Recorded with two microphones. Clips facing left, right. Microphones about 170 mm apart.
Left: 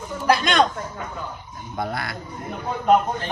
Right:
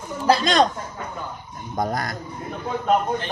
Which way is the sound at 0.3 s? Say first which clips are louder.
Right 1 dB; 35° right (ahead or behind).